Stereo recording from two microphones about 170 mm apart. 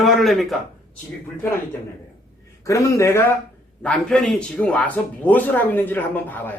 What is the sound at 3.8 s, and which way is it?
A man's voice, 5° left (ahead or behind).